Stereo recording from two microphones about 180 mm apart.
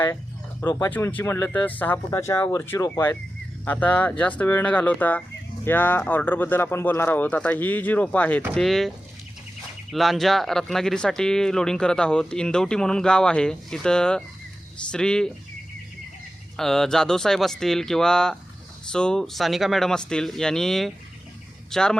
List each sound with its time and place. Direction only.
0.6 s speech: 15° left (ahead or behind)
9.9 s speech: centre (ahead or behind)
16.6 s speech: centre (ahead or behind)